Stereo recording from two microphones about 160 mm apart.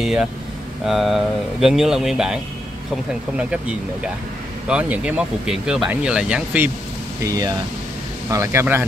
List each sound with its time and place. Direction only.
0.0 s speech: 5° right (ahead or behind)
7.2 s speech: 25° right (ahead or behind)